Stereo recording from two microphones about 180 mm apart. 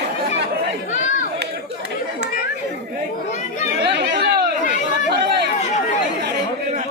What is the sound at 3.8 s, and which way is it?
Chatter, 70° right (ahead or behind).